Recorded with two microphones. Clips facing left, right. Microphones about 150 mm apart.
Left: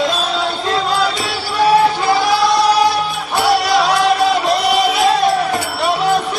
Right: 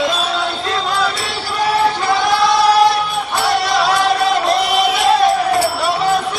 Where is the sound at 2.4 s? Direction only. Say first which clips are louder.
Right 1 dB; centre (ahead or behind).